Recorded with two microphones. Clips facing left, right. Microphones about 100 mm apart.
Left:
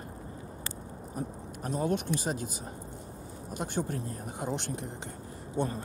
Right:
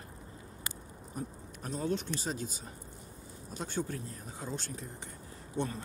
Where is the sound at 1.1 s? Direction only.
40° left (ahead or behind).